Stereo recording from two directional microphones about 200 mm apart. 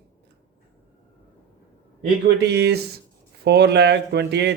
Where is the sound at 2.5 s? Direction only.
55° right (ahead or behind).